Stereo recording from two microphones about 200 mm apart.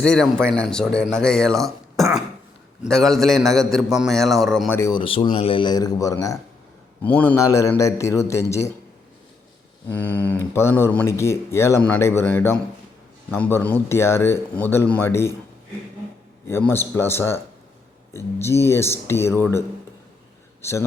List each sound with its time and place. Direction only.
0.0 s a man's voice: 5° left (ahead or behind)
4.8 s speech: 20° left (ahead or behind)
9.9 s speech: 10° left (ahead or behind)
16.5 s a man's voice: 10° left (ahead or behind)